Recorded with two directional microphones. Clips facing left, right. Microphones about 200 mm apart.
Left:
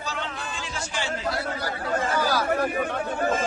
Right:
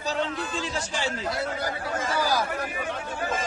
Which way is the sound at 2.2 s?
15° right (ahead or behind).